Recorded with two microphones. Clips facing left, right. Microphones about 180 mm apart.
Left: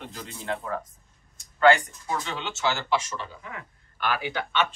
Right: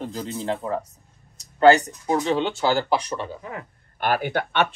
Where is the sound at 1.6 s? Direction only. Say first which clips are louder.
Right 4 dB; 40° right (ahead or behind).